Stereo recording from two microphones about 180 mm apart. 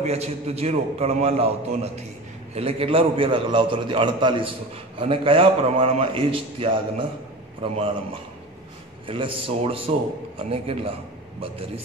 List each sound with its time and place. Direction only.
0.0 s a man's voice: 35° right (ahead or behind)
2.5 s a man's voice: 30° right (ahead or behind)
9.0 s a man's voice: 30° right (ahead or behind)